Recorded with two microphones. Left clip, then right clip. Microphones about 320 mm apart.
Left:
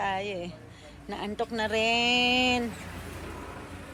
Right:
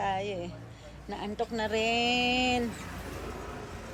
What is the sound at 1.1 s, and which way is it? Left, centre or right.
A woman's voice, centre.